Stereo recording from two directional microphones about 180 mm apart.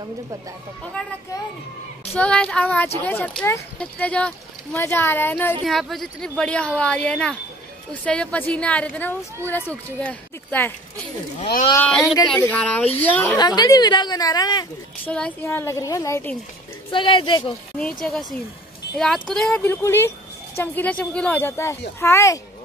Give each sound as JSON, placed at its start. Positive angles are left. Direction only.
{"t": 1.0, "sound": "speech", "side_deg": 5}
{"t": 2.1, "sound": "a woman's voice", "side_deg": 5}
{"t": 11.7, "sound": "speech", "side_deg": 5}
{"t": 13.4, "sound": "a woman's voice", "side_deg": 20}
{"t": 15.0, "sound": "speech", "side_deg": 5}
{"t": 16.9, "sound": "a woman's voice", "side_deg": 30}
{"t": 17.7, "sound": "a woman's voice", "side_deg": 5}